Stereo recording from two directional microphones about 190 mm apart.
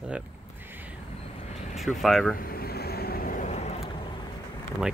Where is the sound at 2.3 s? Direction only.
50° left (ahead or behind); by 3.9 s 35° left (ahead or behind).